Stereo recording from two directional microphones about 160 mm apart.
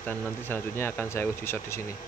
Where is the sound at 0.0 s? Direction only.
10° left (ahead or behind).